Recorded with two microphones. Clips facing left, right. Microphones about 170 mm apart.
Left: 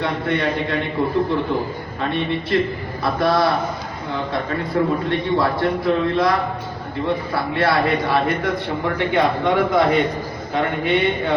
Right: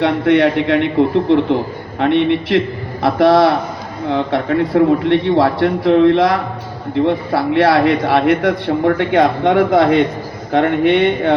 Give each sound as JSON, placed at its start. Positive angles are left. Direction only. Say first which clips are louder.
{"t": 0.0, "sound": "a man's voice", "louder": "right 9 dB", "side_deg": -80}